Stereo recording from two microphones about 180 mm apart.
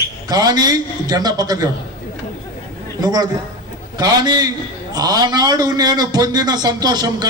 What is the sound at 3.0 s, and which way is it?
A man's voice, 20° right (ahead or behind).